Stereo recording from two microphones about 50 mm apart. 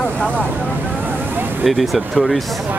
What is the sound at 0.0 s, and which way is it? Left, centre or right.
Vehicle, left.